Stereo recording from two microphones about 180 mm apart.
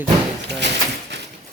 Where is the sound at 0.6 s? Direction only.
70° right (ahead or behind).